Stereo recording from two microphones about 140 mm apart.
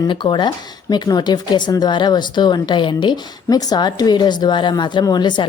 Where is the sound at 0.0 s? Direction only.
35° left (ahead or behind).